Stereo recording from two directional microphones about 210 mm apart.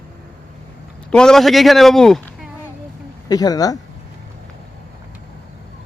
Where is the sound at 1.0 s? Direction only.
5° left (ahead or behind).